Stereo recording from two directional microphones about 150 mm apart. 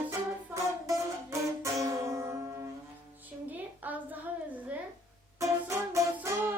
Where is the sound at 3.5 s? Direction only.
10° right (ahead or behind).